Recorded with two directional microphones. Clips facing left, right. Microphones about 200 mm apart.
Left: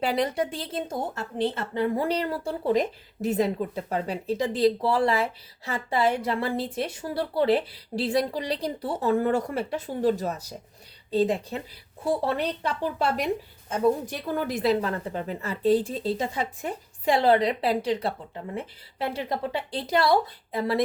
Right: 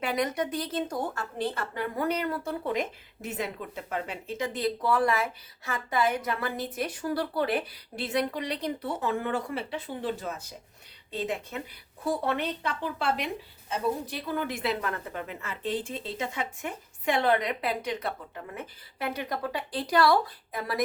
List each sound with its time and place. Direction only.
0.0 s a woman's voice: 30° left (ahead or behind)